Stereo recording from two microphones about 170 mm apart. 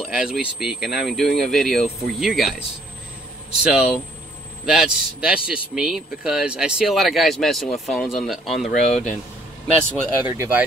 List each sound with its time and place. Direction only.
0.0 s a man's voice: 5° right (ahead or behind)
3.6 s a man's voice: 5° right (ahead or behind)
8.9 s speech: 45° left (ahead or behind)
10.2 s speech: 15° right (ahead or behind)